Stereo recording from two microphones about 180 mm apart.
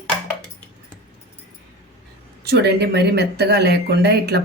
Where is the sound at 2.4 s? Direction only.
65° right (ahead or behind).